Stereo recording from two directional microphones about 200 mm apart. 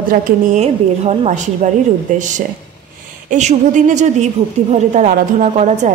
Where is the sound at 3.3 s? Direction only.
35° right (ahead or behind).